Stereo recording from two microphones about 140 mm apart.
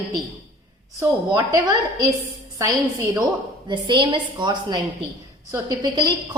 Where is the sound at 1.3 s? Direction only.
30° right (ahead or behind).